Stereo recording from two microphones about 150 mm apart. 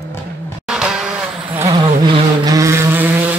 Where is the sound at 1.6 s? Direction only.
30° right (ahead or behind).